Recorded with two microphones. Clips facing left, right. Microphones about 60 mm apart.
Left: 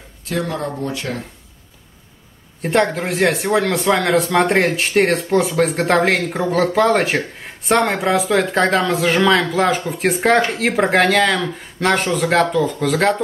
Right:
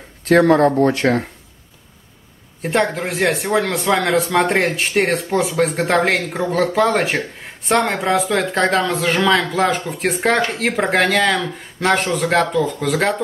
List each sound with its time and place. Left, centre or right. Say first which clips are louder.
0.2 s speech: right 11 dB; right
2.6 s speech: left 1 dB; centre